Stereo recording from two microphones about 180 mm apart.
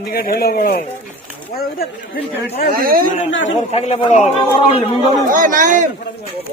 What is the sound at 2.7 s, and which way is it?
Speech, 55° right (ahead or behind).